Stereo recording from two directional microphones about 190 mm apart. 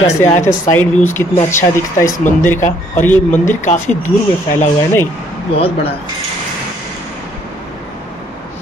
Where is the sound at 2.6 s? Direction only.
10° left (ahead or behind).